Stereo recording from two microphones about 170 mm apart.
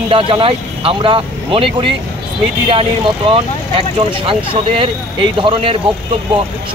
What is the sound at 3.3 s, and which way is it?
A man's voice, 30° right (ahead or behind).